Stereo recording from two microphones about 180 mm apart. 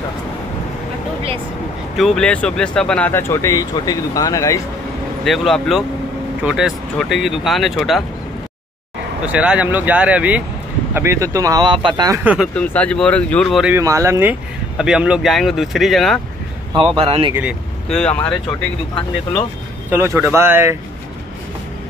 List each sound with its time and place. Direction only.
2.0 s speech: centre (ahead or behind); by 4.6 s 20° left (ahead or behind)
5.2 s speech: centre (ahead or behind)
9.2 s speech: 5° right (ahead or behind); by 12.2 s 25° right (ahead or behind)
12.2 s speech: 10° right (ahead or behind)
12.5 s speech: 5° left (ahead or behind)
13.7 s speech: 15° right (ahead or behind)
14.8 s speech: 5° right (ahead or behind)
16.7 s speech: 30° right (ahead or behind)
17.3 s speech: 10° right (ahead or behind)
17.8 s speech: 5° left (ahead or behind)
19.9 s speech: 15° right (ahead or behind)